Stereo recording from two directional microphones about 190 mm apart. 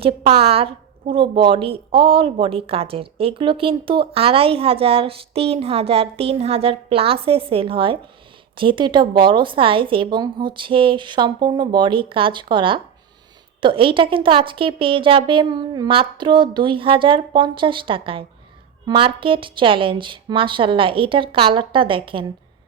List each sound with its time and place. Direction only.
0.0 s a woman's voice: 30° right (ahead or behind)